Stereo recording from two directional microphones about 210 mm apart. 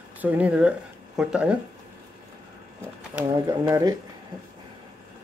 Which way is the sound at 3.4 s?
15° right (ahead or behind).